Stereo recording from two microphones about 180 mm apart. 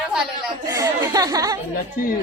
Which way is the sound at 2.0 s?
50° left (ahead or behind).